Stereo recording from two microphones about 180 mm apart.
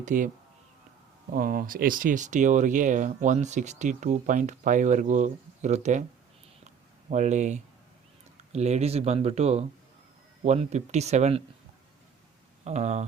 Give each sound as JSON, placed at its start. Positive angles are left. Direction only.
{"t": 0.0, "sound": "speech", "side_deg": -45}
{"t": 1.3, "sound": "speech", "side_deg": -50}
{"t": 6.7, "sound": "a sound", "side_deg": -40}
{"t": 8.5, "sound": "speech", "side_deg": -40}
{"t": 12.6, "sound": "speech", "side_deg": -40}